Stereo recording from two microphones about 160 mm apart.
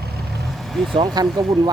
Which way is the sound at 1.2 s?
25° right (ahead or behind).